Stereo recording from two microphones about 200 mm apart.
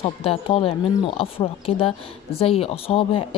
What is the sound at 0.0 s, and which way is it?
A woman's voice, 30° left (ahead or behind).